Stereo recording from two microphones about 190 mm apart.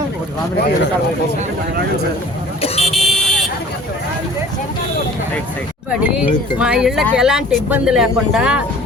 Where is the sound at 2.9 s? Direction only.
Centre (ahead or behind).